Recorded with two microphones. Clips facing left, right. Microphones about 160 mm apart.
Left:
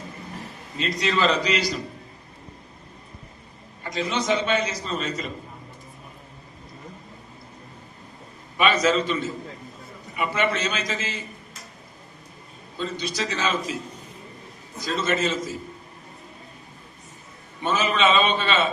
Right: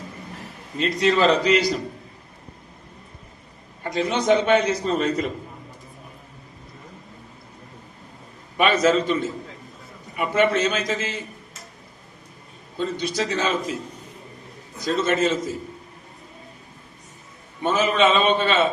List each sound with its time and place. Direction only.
0.8 s a man's voice: 50° right (ahead or behind)
3.9 s a man's voice: 55° right (ahead or behind)
8.5 s a man's voice: 50° right (ahead or behind)
12.8 s a man's voice: 55° right (ahead or behind)
15.0 s a man's voice: 50° right (ahead or behind)
17.7 s a man's voice: 50° right (ahead or behind)